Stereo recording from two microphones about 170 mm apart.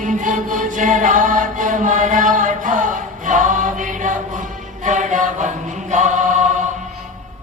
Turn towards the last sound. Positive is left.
turn(degrees=-45)  # may be behind; listen again after turning